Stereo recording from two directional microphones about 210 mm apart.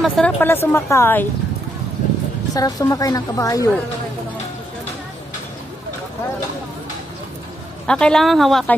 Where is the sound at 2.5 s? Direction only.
15° left (ahead or behind).